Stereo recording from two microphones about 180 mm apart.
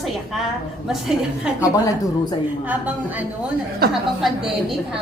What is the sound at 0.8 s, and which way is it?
A woman's voice, 5° right (ahead or behind).